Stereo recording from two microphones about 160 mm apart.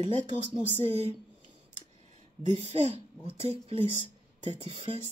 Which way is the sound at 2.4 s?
45° right (ahead or behind).